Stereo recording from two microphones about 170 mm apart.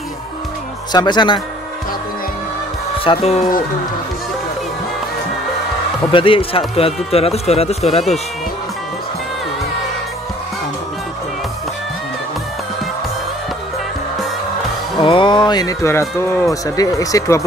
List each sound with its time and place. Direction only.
0.9 s speech: 25° left (ahead or behind)
3.0 s speech: 35° left (ahead or behind)
6.1 s speech: 30° left (ahead or behind)
15.0 s speech: 30° left (ahead or behind)